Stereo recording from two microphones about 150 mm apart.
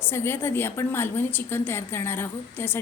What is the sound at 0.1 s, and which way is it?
A woman's voice, 15° left (ahead or behind).